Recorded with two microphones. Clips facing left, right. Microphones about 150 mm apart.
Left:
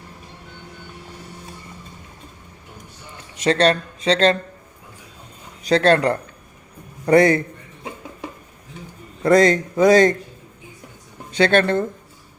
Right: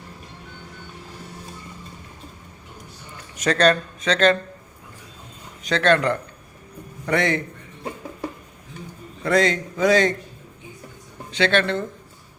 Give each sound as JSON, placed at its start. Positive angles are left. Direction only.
{"t": 3.3, "sound": "speech", "side_deg": 25}
{"t": 5.6, "sound": "a man's voice", "side_deg": 35}
{"t": 9.2, "sound": "a man's voice", "side_deg": 40}
{"t": 11.3, "sound": "a man's voice", "side_deg": 45}